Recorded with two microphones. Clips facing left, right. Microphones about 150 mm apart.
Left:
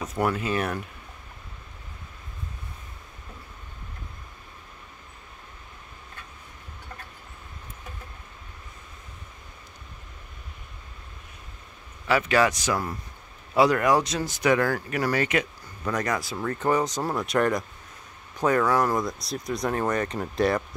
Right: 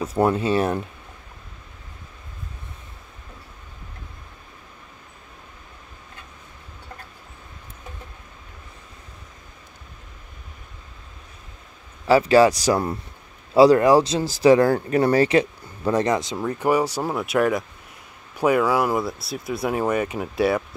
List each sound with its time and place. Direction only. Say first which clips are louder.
0.0 s speech: right 6 dB; 30° right (ahead or behind)
12.1 s speech: right 7 dB; 30° right (ahead or behind); by 20.6 s 5° right (ahead or behind)